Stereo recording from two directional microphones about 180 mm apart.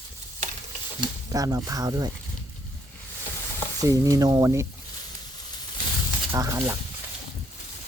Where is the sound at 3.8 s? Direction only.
20° right (ahead or behind).